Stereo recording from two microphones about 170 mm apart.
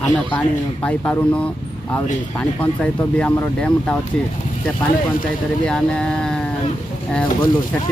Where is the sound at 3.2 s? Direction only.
5° left (ahead or behind).